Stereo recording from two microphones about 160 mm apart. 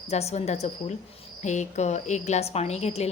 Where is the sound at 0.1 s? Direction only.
45° left (ahead or behind).